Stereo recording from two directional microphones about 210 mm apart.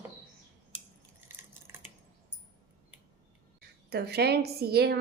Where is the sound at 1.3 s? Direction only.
10° right (ahead or behind).